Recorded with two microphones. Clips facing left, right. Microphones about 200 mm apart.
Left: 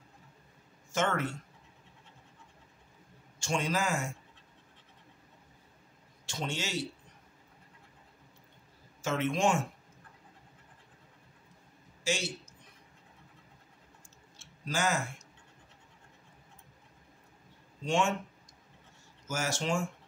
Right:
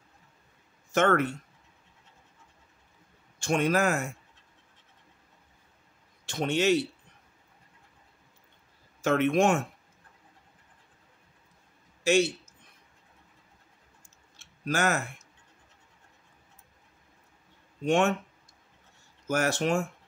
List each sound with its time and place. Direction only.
0.9 s a man's voice: 60° right (ahead or behind)
3.3 s a man's voice: 60° right (ahead or behind)
6.2 s a man's voice: 60° right (ahead or behind)
9.0 s a man's voice: 60° right (ahead or behind)
12.0 s speech: 60° right (ahead or behind)
14.3 s tick-tock: 60° right (ahead or behind)
17.8 s a man's voice: 60° right (ahead or behind)
19.2 s a man's voice: 60° right (ahead or behind)